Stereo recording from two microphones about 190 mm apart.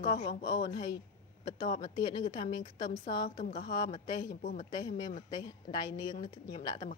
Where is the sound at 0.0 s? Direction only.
20° left (ahead or behind).